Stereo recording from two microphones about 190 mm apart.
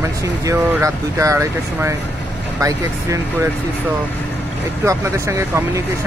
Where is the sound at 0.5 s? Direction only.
15° right (ahead or behind).